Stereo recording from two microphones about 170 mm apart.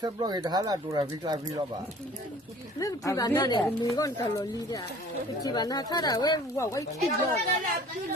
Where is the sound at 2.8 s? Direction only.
20° left (ahead or behind).